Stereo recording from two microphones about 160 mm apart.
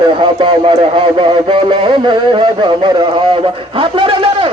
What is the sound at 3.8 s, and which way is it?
Speech, 30° right (ahead or behind).